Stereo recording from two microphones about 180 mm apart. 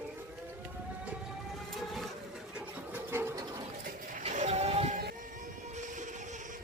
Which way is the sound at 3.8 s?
50° right (ahead or behind).